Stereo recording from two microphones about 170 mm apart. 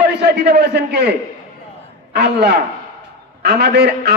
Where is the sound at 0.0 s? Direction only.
80° right.